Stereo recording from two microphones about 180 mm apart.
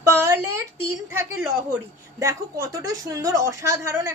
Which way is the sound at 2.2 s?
15° right (ahead or behind).